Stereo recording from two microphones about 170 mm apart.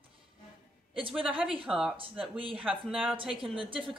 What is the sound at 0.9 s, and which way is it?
Speech, 30° right (ahead or behind).